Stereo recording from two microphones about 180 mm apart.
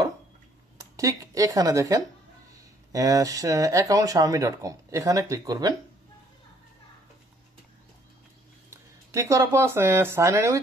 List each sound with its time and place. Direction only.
0.7 s speech: 20° right (ahead or behind)
9.1 s speech: 15° right (ahead or behind)